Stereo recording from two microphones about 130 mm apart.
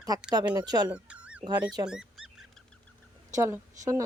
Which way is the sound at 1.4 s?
35° right (ahead or behind).